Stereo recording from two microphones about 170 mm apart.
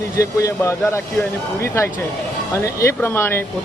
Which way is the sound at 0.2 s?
15° left (ahead or behind).